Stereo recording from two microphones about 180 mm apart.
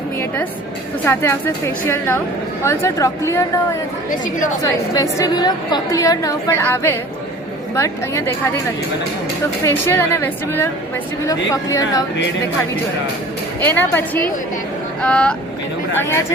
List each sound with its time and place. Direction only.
1.0 s a woman's voice: 10° left (ahead or behind)
9.6 s a woman's voice: 15° left (ahead or behind)
13.6 s a woman's voice: 10° left (ahead or behind)